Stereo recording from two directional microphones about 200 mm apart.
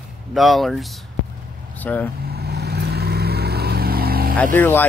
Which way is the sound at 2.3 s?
55° right (ahead or behind).